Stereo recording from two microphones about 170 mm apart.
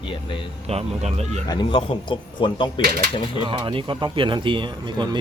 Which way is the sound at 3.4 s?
30° right (ahead or behind).